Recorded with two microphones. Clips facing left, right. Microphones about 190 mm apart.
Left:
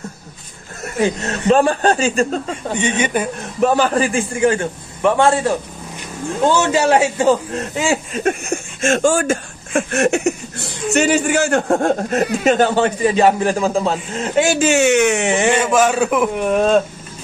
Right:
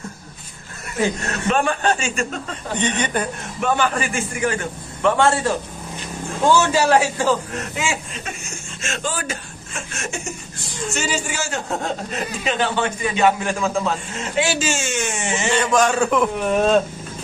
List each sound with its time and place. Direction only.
1.5 s a man's voice: 35° left (ahead or behind)
2.7 s a man's voice: 10° left (ahead or behind)
3.6 s a man's voice: 35° left (ahead or behind)
5.0 s a man's voice: 15° left (ahead or behind)
7.7 s a man's voice: 40° left (ahead or behind); by 15.6 s 60° left (ahead or behind)
15.6 s a man's voice: 5° left (ahead or behind)